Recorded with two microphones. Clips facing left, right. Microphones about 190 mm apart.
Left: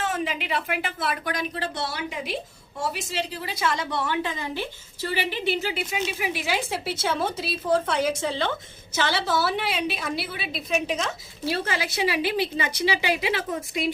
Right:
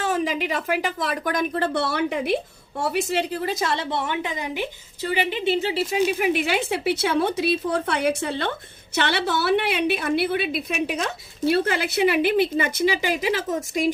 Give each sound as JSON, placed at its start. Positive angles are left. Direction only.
{"t": 0.0, "sound": "a woman's voice", "side_deg": -40}
{"t": 3.8, "sound": "a woman's voice", "side_deg": -20}
{"t": 6.1, "sound": "a woman's voice", "side_deg": -50}